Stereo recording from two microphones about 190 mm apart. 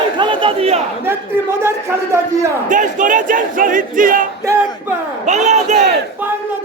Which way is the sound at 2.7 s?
45° right (ahead or behind).